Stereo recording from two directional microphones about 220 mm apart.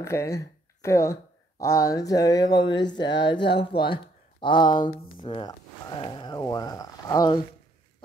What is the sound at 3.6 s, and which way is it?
Speech, 20° left (ahead or behind).